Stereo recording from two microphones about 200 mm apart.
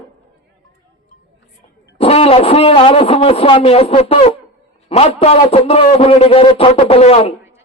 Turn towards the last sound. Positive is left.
turn(degrees=30)  # may be behind; listen again after turning